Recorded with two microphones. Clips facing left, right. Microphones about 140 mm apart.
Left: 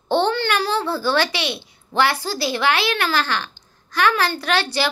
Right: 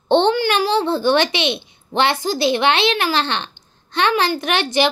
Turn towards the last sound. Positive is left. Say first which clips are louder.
# right 3 dB
turn(degrees=-20)  # may be behind; listen again after turning